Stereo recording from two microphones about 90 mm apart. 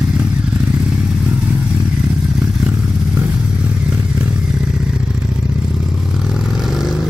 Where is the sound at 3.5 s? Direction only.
15° right (ahead or behind).